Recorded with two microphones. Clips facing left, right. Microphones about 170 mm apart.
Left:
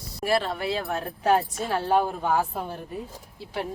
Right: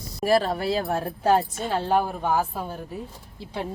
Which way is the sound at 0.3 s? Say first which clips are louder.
Right 4 dB; 40° right (ahead or behind).